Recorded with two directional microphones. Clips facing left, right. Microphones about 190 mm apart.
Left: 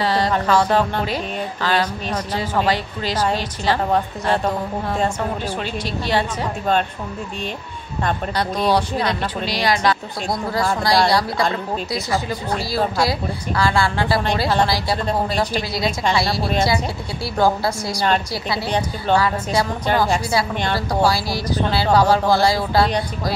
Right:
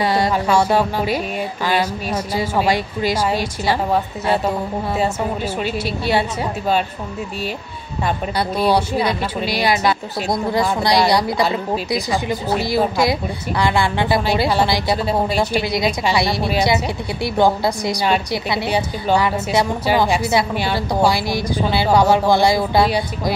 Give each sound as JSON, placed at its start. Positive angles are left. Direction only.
{"t": 0.0, "sound": "speech", "side_deg": -10}
{"t": 8.0, "sound": "a woman's voice", "side_deg": -10}